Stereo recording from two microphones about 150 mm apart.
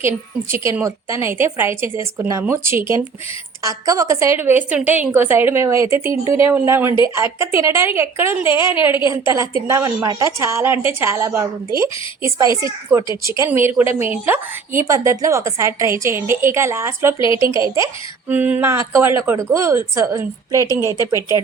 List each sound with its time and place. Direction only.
0.5 s a woman's voice: 15° right (ahead or behind)
17.2 s a woman's voice: 35° left (ahead or behind)
18.3 s a woman's voice: 10° right (ahead or behind)
21.2 s speech: 25° left (ahead or behind)